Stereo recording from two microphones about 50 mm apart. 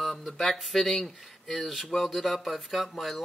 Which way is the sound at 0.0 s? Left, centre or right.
Centre.